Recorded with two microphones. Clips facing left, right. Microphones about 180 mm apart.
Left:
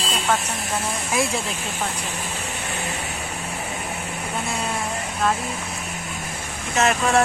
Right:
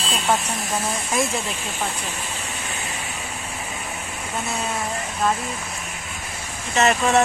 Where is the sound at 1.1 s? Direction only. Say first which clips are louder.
Left 1 dB; centre (ahead or behind).